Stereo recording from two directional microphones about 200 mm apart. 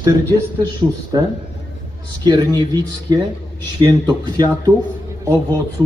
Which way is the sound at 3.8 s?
20° right (ahead or behind).